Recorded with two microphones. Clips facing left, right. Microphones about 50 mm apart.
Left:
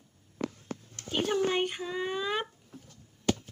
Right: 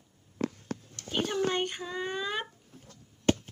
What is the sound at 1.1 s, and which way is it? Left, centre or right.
Speech, centre.